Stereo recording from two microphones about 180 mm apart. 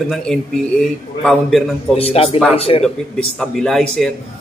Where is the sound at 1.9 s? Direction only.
35° left (ahead or behind).